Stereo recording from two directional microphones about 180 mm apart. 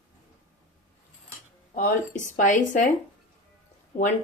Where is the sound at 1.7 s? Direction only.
45° left (ahead or behind).